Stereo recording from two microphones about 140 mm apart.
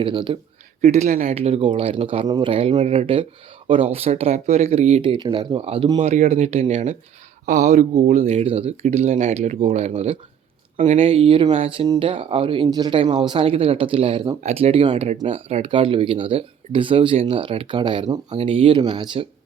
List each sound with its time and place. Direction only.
0.0 s speech: 35° right (ahead or behind)
0.8 s speech: 55° right (ahead or behind)
1.4 s speech: 45° right (ahead or behind)
2.2 s speech: 25° right (ahead or behind)
2.5 s speech: 45° right (ahead or behind)
6.0 s speech: 55° right (ahead or behind)
8.3 s speech: 45° right (ahead or behind)
10.9 s speech: 40° right (ahead or behind)